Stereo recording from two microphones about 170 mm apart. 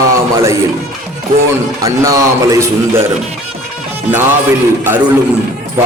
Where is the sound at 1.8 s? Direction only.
20° right (ahead or behind).